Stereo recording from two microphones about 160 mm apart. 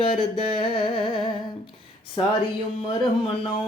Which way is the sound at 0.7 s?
30° left (ahead or behind).